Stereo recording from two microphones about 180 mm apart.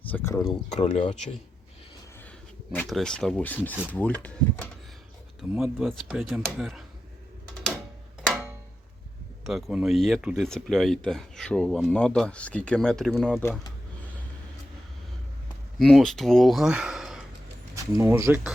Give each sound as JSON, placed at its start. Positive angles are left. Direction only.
{"t": 0.1, "sound": "speech", "side_deg": 15}
{"t": 0.8, "sound": "speech", "side_deg": 35}
{"t": 2.7, "sound": "speech", "side_deg": 5}
{"t": 9.4, "sound": "speech", "side_deg": 0}
{"t": 15.8, "sound": "speech", "side_deg": 0}
{"t": 17.7, "sound": "speech", "side_deg": -15}